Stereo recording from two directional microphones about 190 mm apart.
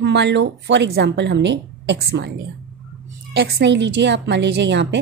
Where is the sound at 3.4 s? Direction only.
60° right (ahead or behind).